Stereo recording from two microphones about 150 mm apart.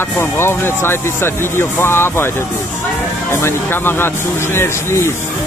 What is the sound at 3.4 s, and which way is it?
Speech, 15° left (ahead or behind).